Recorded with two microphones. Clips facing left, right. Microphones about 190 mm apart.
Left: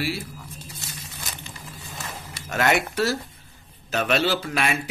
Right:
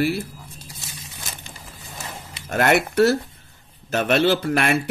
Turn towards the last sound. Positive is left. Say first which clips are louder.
# right 5 dB
turn(degrees=-55)  # may be behind; listen again after turning